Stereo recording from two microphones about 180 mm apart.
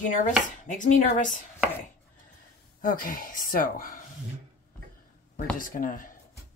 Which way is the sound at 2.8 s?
50° left (ahead or behind).